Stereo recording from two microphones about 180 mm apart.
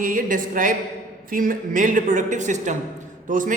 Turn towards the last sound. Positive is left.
turn(degrees=-45)  # may be behind; listen again after turning